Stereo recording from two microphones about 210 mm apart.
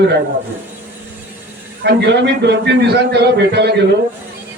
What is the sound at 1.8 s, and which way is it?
A man's voice, 55° right (ahead or behind).